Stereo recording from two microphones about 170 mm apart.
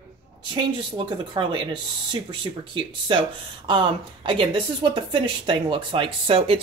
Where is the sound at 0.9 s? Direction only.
30° right (ahead or behind).